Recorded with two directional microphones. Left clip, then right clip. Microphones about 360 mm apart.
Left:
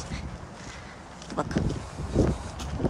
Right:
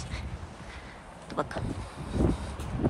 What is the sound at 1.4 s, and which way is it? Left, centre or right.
Speech, centre.